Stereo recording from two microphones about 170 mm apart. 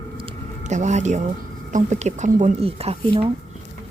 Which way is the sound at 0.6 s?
45° right (ahead or behind).